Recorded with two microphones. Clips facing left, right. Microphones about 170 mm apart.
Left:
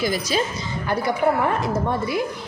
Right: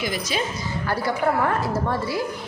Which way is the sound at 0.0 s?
35° left (ahead or behind).